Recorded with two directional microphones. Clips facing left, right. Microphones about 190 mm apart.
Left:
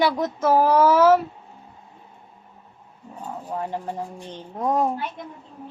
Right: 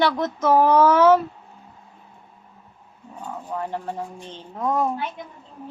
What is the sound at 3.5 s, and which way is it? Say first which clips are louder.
Speech: even; 15° left (ahead or behind).